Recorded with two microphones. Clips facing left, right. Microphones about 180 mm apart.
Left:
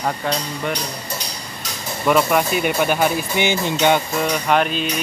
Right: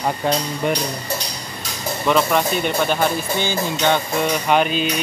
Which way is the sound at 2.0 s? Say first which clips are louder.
Left 1 dB; 5° left (ahead or behind).